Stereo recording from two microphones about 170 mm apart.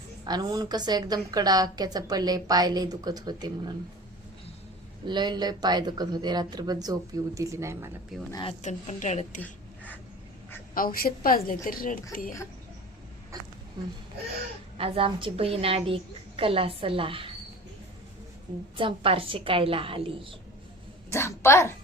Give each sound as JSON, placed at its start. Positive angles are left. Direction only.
{"t": 0.3, "sound": "a woman's voice", "side_deg": -25}
{"t": 5.0, "sound": "a woman's voice", "side_deg": -25}
{"t": 8.1, "sound": "speech", "side_deg": 0}
{"t": 8.4, "sound": "a woman's voice", "side_deg": 40}
{"t": 9.4, "sound": "a sound", "side_deg": 10}
{"t": 10.8, "sound": "a woman's voice", "side_deg": 60}
{"t": 14.8, "sound": "a woman's voice", "side_deg": -35}
{"t": 18.8, "sound": "a woman's voice", "side_deg": -30}
{"t": 21.1, "sound": "a child's voice", "side_deg": 15}